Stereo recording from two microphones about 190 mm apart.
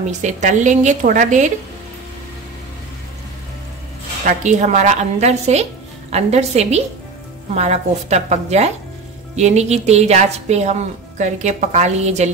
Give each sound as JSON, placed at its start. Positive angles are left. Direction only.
{"t": 0.2, "sound": "a woman's voice", "side_deg": -40}
{"t": 4.3, "sound": "a woman's voice", "side_deg": -40}